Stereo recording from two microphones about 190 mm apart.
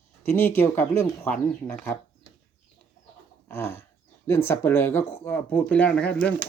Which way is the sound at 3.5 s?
10° left (ahead or behind).